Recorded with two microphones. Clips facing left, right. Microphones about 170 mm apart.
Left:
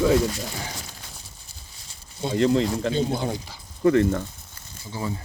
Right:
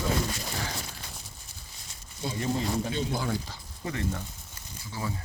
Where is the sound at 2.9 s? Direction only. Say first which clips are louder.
Left 6 dB; 25° left (ahead or behind).